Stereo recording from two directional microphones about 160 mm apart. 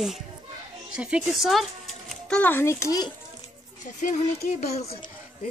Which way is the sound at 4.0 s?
55° left (ahead or behind).